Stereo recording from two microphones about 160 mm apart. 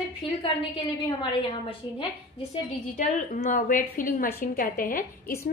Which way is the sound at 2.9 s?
50° left (ahead or behind).